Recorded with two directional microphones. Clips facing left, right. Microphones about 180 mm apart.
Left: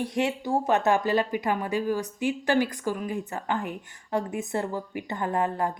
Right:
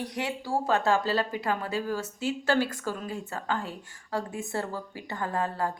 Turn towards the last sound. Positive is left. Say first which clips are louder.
# left 3 dB
turn(degrees=20)  # may be behind; listen again after turning